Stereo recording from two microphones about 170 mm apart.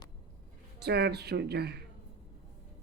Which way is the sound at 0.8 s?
75° right (ahead or behind).